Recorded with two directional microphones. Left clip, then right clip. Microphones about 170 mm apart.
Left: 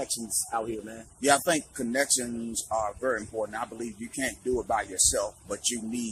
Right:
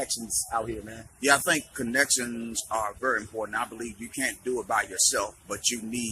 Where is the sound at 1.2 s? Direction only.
20° left (ahead or behind).